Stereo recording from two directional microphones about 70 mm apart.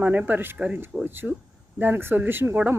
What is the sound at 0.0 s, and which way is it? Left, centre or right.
Speech, right.